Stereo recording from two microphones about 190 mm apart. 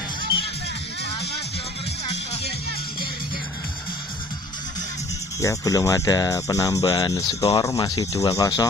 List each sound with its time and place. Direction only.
5.4 s speech: 15° left (ahead or behind)